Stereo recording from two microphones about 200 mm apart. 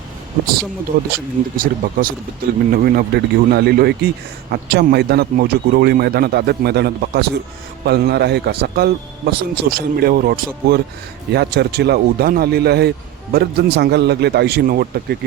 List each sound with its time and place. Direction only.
1.1 s a man's voice: 45° right (ahead or behind)